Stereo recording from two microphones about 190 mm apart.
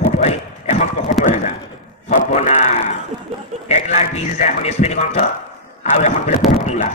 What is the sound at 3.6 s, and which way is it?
A man's voice, 35° left (ahead or behind).